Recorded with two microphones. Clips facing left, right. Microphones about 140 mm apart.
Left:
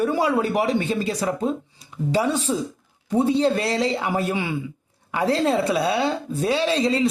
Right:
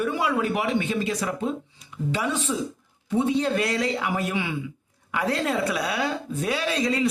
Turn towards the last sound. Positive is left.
turn(degrees=25)  # may be behind; listen again after turning